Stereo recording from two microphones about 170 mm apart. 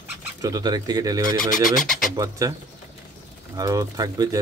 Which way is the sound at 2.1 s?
20° right (ahead or behind).